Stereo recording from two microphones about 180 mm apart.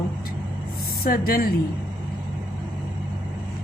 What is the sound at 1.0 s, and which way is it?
Speech, 55° left (ahead or behind).